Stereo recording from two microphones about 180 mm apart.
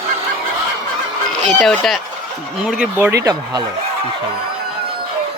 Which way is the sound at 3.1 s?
20° right (ahead or behind).